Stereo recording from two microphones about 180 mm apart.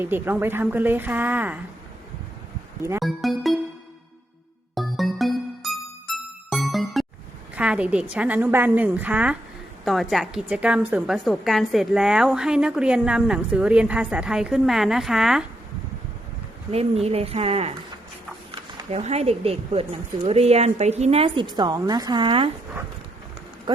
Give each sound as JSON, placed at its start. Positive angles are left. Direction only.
{"t": 0.0, "sound": "a woman's voice", "side_deg": -10}
{"t": 3.0, "sound": "a woman's voice", "side_deg": 0}
{"t": 4.7, "sound": "music", "side_deg": 0}
{"t": 7.5, "sound": "a woman's voice", "side_deg": -5}
{"t": 16.7, "sound": "a woman's voice", "side_deg": -35}
{"t": 18.9, "sound": "a woman's voice", "side_deg": -40}